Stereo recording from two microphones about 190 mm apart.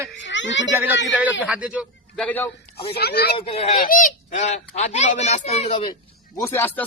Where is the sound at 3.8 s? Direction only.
45° left (ahead or behind); by 6.0 s 25° left (ahead or behind).